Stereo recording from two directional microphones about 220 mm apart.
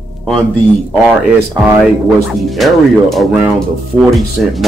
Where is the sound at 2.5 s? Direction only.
Centre (ahead or behind).